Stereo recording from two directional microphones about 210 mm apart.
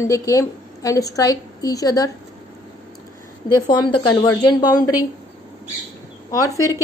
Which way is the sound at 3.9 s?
20° left (ahead or behind).